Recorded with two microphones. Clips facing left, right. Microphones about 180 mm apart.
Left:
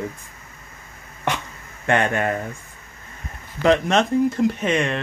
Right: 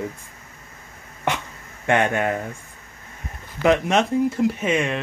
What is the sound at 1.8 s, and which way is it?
Speech, 15° right (ahead or behind).